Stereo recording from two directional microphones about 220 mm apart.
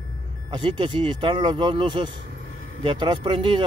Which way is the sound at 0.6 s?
20° right (ahead or behind).